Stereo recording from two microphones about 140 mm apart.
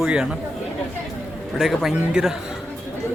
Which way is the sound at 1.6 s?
Centre (ahead or behind).